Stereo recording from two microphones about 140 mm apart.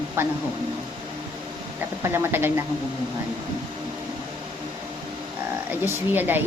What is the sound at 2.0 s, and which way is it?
Speech, 15° right (ahead or behind).